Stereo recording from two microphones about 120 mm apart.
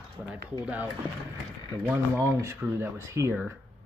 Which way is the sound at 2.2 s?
25° right (ahead or behind).